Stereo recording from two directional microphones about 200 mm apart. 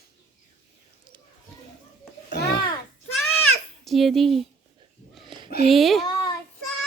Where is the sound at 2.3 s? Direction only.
55° left (ahead or behind).